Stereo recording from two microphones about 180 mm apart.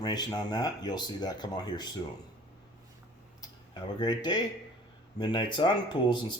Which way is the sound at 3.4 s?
20° left (ahead or behind).